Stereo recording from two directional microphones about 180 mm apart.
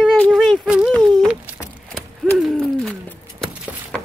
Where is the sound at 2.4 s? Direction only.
Centre (ahead or behind).